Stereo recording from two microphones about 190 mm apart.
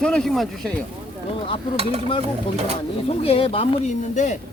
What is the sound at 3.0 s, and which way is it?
Speech, 30° left (ahead or behind).